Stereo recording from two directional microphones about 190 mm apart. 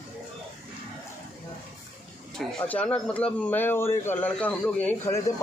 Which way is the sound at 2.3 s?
5° left (ahead or behind).